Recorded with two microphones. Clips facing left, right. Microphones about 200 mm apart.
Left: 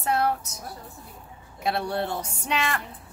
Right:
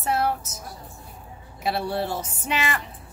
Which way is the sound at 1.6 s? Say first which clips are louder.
Right 1 dB; centre (ahead or behind).